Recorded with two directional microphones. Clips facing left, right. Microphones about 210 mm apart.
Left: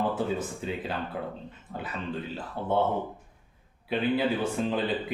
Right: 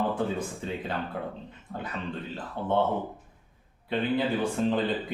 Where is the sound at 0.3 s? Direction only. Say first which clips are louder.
Even; 5° left (ahead or behind).